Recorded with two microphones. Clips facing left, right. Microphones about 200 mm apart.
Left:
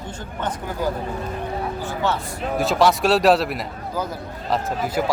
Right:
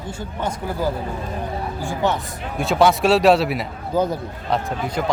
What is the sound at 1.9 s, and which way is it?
Vehicle, 15° right (ahead or behind).